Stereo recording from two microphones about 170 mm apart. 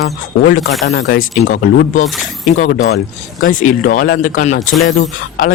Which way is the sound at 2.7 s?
60° left (ahead or behind).